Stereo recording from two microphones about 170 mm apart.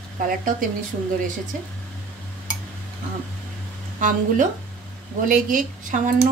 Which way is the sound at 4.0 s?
50° right (ahead or behind).